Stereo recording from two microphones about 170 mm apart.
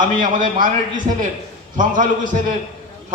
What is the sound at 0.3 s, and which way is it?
A man's voice, 50° right (ahead or behind).